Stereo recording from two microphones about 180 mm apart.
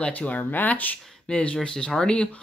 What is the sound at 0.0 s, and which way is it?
Speech, 5° left (ahead or behind).